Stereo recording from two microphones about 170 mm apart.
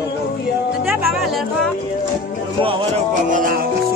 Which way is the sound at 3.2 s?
55° right (ahead or behind).